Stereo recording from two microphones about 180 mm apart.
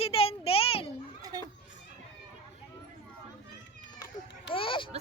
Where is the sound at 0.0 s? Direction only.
35° left (ahead or behind).